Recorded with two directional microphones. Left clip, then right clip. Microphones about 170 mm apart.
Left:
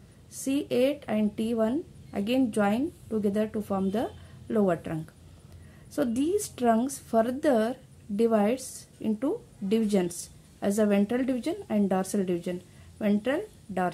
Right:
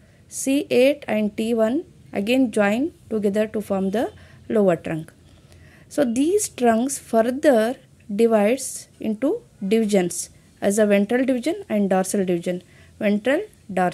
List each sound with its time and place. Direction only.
0.3 s a woman's voice: 30° right (ahead or behind)